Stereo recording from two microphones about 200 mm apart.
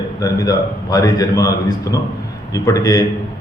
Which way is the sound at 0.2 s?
15° left (ahead or behind).